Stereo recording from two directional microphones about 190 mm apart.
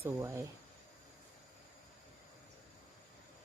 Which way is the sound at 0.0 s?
15° right (ahead or behind).